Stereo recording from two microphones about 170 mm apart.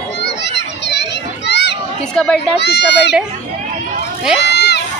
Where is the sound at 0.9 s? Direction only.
90° left.